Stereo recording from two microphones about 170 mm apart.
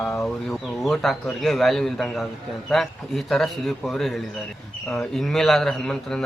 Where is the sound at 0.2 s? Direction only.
Centre (ahead or behind).